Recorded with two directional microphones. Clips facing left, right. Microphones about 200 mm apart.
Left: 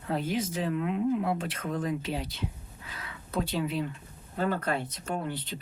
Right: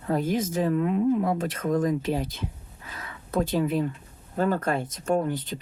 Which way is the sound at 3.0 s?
45° right (ahead or behind).